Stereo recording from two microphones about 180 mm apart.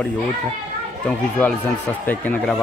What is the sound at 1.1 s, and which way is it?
A man's voice, 10° left (ahead or behind).